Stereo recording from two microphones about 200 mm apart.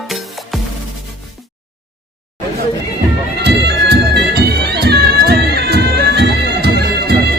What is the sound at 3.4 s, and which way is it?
Bagpipes, 55° right (ahead or behind).